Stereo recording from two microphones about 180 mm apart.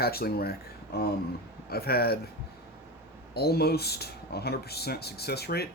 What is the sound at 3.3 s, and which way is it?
Speech, 60° left (ahead or behind).